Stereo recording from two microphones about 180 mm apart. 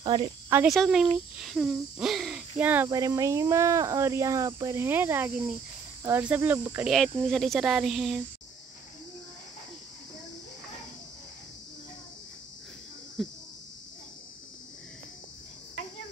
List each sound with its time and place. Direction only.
0.0 s speech: 30° right (ahead or behind)
0.7 s speech: centre (ahead or behind)
13.2 s cricket: centre (ahead or behind)